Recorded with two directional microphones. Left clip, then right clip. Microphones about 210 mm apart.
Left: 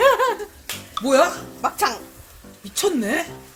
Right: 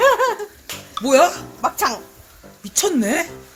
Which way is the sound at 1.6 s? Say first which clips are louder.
Right 2 dB; 45° right (ahead or behind).